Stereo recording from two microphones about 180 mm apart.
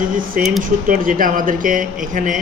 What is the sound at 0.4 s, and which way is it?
Speech, 50° right (ahead or behind).